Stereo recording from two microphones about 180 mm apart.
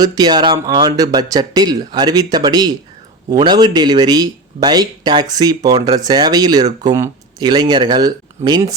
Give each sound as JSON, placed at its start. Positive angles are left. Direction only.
{"t": 0.0, "sound": "speech", "side_deg": -25}